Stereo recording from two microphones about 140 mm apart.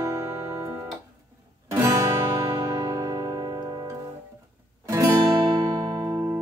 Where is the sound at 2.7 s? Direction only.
25° right (ahead or behind).